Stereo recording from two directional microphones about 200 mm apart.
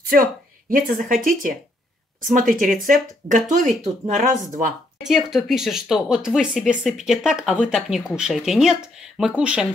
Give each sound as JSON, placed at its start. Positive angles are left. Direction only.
{"t": 0.0, "sound": "speech", "side_deg": -45}
{"t": 5.0, "sound": "speech", "side_deg": 0}